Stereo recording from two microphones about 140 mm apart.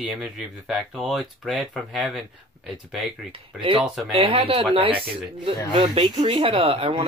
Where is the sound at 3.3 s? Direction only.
40° right (ahead or behind).